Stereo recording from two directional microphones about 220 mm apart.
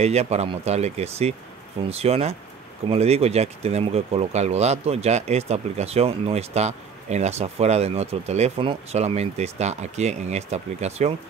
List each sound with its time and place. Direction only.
0.0 s speech: 30° right (ahead or behind)